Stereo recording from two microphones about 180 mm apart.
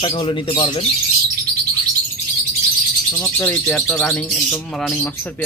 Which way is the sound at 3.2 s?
10° left (ahead or behind).